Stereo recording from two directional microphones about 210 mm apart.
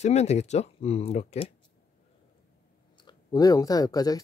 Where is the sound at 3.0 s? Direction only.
20° left (ahead or behind).